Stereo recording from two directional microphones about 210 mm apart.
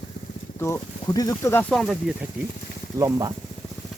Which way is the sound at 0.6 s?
15° left (ahead or behind).